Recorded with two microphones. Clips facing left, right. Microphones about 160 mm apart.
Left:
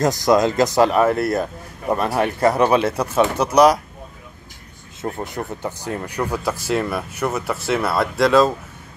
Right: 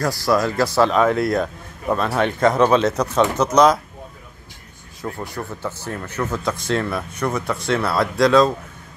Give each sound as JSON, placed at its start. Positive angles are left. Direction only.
{"t": 0.0, "sound": "speech", "side_deg": 20}
{"t": 1.9, "sound": "speech", "side_deg": 15}
{"t": 5.1, "sound": "speech", "side_deg": 20}